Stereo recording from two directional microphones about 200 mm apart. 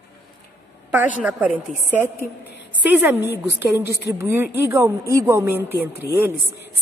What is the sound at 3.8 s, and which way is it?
Speech, 55° left (ahead or behind).